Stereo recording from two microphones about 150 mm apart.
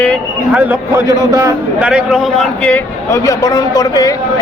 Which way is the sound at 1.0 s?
20° right (ahead or behind).